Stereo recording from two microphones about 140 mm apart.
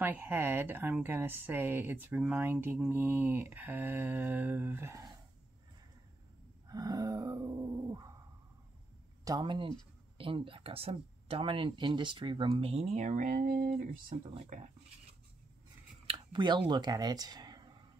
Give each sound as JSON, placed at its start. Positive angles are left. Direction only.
{"t": 0.0, "sound": "speech", "side_deg": -15}
{"t": 6.7, "sound": "a sound", "side_deg": -25}
{"t": 9.2, "sound": "speech", "side_deg": -30}
{"t": 16.1, "sound": "speech", "side_deg": -35}